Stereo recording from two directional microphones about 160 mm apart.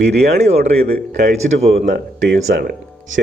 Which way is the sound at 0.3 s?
45° right (ahead or behind).